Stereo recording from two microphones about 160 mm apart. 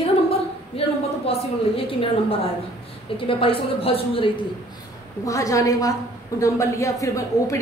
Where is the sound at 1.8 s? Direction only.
35° left (ahead or behind).